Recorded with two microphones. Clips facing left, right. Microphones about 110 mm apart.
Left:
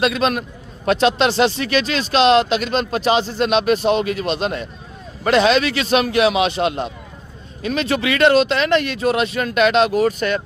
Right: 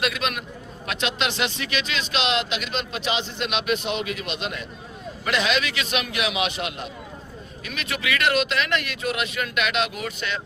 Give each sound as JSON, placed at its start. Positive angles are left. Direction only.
{"t": 0.0, "sound": "speech", "side_deg": 35}